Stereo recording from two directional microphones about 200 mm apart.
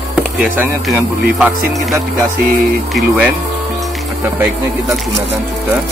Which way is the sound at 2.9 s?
5° right (ahead or behind).